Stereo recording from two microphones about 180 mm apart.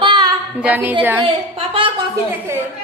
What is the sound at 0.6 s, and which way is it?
Speech, 10° right (ahead or behind).